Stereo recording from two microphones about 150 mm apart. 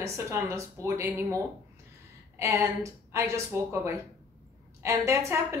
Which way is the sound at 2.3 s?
20° right (ahead or behind).